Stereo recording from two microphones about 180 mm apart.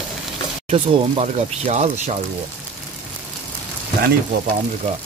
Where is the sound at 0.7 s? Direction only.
35° right (ahead or behind).